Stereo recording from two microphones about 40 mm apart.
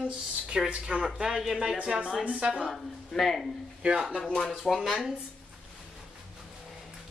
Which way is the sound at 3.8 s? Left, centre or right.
Right.